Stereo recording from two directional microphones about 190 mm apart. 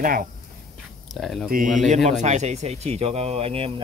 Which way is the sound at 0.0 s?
50° right (ahead or behind).